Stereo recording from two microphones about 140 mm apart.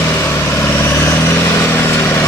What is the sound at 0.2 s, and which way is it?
Vehicle, 15° left (ahead or behind).